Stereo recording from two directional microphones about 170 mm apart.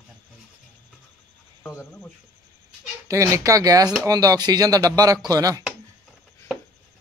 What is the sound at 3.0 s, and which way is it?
Speech, 20° right (ahead or behind).